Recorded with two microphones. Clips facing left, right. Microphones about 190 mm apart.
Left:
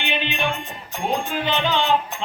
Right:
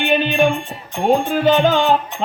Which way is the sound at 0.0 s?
45° right (ahead or behind).